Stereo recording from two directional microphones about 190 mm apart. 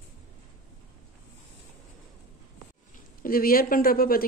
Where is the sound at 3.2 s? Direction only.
50° left (ahead or behind).